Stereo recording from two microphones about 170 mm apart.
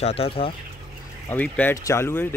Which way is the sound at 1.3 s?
10° left (ahead or behind).